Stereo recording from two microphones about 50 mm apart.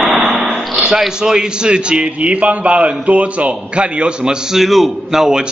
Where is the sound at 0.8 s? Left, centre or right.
Centre.